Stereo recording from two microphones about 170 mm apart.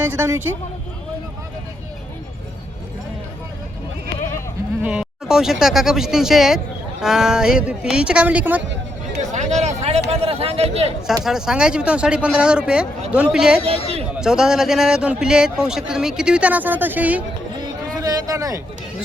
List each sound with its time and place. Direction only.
0.0 s a woman's voice: 10° right (ahead or behind)
4.8 s a man's voice: 5° right (ahead or behind)
9.1 s a sound: 45° right (ahead or behind)
11.2 s a man's voice: 5° right (ahead or behind)
13.7 s speech: 35° right (ahead or behind)
14.2 s a man's voice: 5° right (ahead or behind)
18.0 s speech: 20° right (ahead or behind)